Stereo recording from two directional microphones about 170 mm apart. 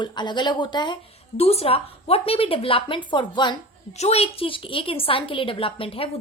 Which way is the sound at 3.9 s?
40° left (ahead or behind).